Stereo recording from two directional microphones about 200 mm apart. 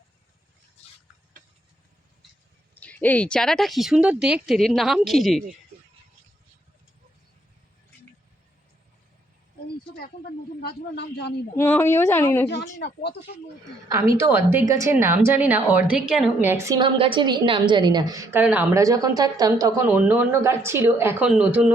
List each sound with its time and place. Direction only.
2.8 s speech: 5° left (ahead or behind)
10.6 s speech: 55° left (ahead or behind)
11.5 s speech: 10° left (ahead or behind)
12.8 s speech: 55° left (ahead or behind)
14.3 s a woman's voice: 15° right (ahead or behind)